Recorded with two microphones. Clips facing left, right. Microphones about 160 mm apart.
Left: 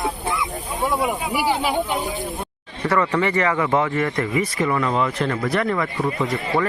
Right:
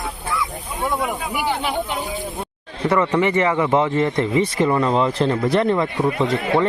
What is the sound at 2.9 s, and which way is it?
A man's voice, 20° right (ahead or behind).